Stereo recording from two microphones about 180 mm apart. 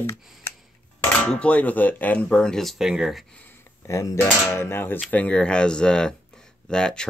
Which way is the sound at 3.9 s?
15° left (ahead or behind).